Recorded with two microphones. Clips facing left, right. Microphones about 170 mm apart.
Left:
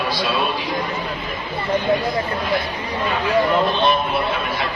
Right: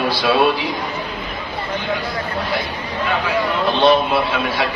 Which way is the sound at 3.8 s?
85° right.